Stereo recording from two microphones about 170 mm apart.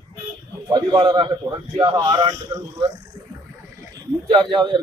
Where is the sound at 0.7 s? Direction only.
25° right (ahead or behind).